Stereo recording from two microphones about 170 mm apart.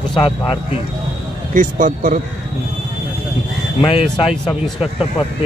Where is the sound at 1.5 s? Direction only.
50° right (ahead or behind).